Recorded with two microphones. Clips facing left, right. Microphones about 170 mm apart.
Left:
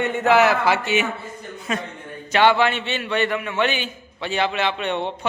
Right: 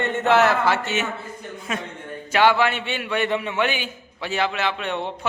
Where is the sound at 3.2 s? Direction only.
25° right (ahead or behind).